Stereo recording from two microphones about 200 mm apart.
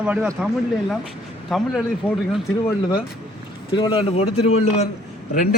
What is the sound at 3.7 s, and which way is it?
A man's voice, 25° left (ahead or behind).